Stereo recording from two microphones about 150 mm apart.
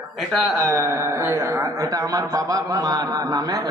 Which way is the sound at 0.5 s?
20° right (ahead or behind).